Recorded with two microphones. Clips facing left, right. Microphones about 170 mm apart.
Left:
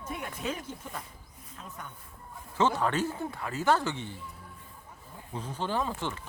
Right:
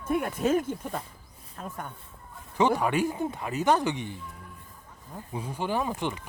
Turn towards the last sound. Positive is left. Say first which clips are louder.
# right 3 dB
turn(degrees=-15)  # may be behind; listen again after turning